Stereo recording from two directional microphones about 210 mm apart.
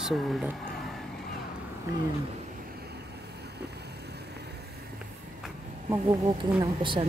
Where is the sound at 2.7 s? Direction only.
50° right (ahead or behind).